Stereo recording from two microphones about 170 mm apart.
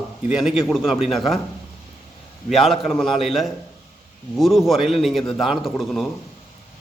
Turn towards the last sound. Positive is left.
turn(degrees=0)  # may be behind; listen again after turning